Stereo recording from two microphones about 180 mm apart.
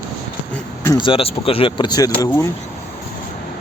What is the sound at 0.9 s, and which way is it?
Speech, 25° left (ahead or behind).